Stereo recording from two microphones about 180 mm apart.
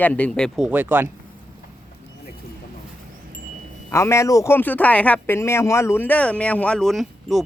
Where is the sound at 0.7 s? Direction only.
10° right (ahead or behind).